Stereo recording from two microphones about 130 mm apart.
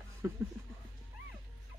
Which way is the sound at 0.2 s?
20° right (ahead or behind).